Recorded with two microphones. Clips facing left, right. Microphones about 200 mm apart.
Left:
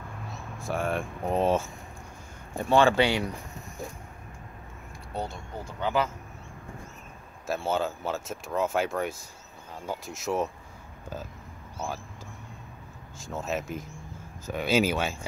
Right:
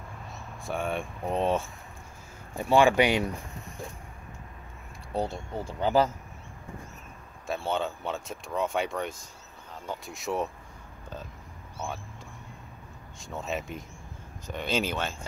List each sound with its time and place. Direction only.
0.6 s speech: centre (ahead or behind)
2.5 s speech: 10° right (ahead or behind)
5.3 s speech: 35° right (ahead or behind)
7.4 s speech: 5° left (ahead or behind)
13.2 s speech: centre (ahead or behind)